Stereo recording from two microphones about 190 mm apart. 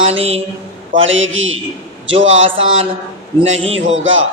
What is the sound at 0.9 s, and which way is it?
A man's voice, 90° right.